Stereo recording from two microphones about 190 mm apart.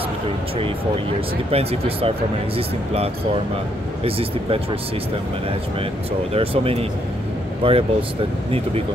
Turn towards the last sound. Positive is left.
turn(degrees=-30)  # may be behind; listen again after turning